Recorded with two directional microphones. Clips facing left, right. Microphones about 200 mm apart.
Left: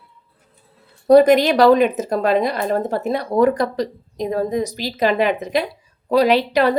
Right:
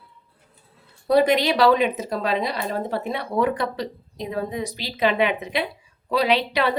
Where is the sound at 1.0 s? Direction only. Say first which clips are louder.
Left 7 dB; 45° left (ahead or behind).